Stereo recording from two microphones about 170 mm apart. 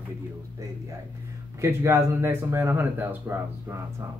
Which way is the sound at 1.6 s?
15° right (ahead or behind).